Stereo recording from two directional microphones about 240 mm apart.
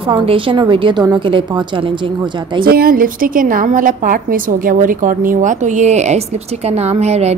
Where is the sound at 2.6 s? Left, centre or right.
Right.